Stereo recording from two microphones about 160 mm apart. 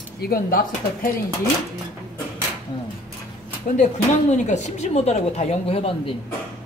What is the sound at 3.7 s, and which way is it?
Speech, 45° left (ahead or behind).